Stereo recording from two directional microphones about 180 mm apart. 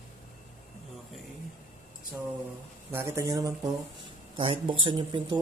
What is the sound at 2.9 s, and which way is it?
Speech, 15° right (ahead or behind).